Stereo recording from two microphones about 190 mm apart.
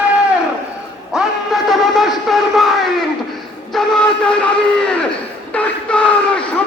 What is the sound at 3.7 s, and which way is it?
Music, 5° left (ahead or behind).